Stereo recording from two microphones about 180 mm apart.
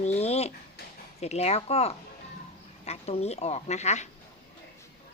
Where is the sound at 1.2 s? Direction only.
35° left (ahead or behind).